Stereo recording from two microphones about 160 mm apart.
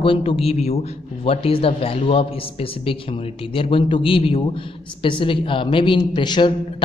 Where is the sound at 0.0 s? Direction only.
35° left (ahead or behind).